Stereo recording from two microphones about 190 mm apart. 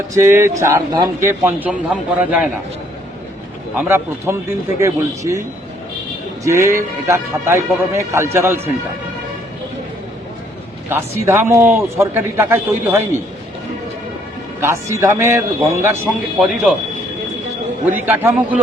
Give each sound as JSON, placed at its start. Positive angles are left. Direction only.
{"t": 0.1, "sound": "a man's voice", "side_deg": -15}
{"t": 3.8, "sound": "a man's voice", "side_deg": -10}
{"t": 6.4, "sound": "a man's voice", "side_deg": -15}
{"t": 10.8, "sound": "a man's voice", "side_deg": -10}
{"t": 14.6, "sound": "a man's voice", "side_deg": -15}
{"t": 16.0, "sound": "speech", "side_deg": 0}
{"t": 17.8, "sound": "a man's voice", "side_deg": -10}